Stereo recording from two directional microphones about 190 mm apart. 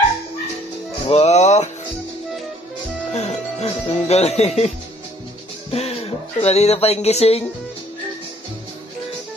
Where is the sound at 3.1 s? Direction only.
35° left (ahead or behind).